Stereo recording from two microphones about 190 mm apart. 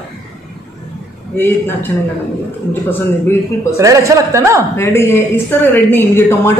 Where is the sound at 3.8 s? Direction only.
15° right (ahead or behind).